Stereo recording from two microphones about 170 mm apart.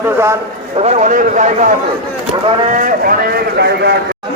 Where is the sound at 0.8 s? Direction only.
40° right (ahead or behind).